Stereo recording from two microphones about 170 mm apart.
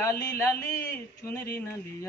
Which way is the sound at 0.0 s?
15° left (ahead or behind).